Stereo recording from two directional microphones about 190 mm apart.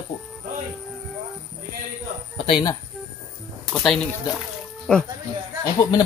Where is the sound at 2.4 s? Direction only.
25° left (ahead or behind).